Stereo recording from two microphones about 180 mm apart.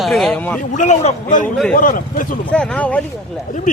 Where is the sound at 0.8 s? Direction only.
45° left (ahead or behind).